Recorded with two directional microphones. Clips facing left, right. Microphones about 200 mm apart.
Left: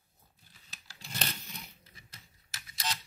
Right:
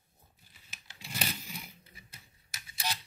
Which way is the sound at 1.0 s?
10° right (ahead or behind).